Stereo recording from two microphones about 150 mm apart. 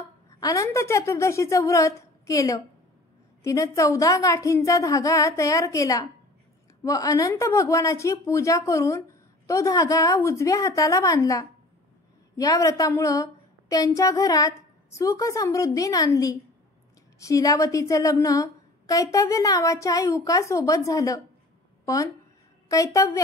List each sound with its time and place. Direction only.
0.3 s a woman's voice: 25° left (ahead or behind)